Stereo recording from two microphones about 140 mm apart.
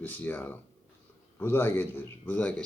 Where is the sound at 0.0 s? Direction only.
15° left (ahead or behind).